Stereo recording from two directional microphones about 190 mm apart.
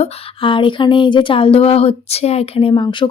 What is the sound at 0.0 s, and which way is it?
Speech, 25° left (ahead or behind).